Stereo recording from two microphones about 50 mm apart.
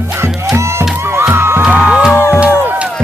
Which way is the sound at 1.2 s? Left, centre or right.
Right.